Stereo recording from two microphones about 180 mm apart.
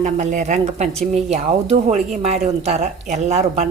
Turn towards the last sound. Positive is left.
turn(degrees=-40)  # may be behind; listen again after turning